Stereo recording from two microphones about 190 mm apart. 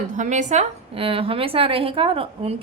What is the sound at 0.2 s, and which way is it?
A woman's voice, 40° right (ahead or behind).